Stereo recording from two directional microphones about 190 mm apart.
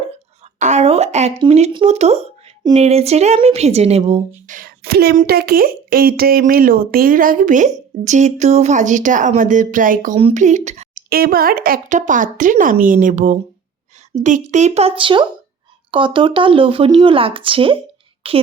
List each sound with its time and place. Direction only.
0.6 s a woman's voice: 35° right (ahead or behind)
4.4 s a woman's voice: 45° right (ahead or behind)
10.2 s a woman's voice: 35° right (ahead or behind)